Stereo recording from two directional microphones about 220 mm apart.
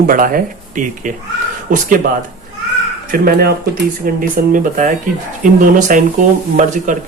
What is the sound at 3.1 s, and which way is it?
Speech, 40° right (ahead or behind).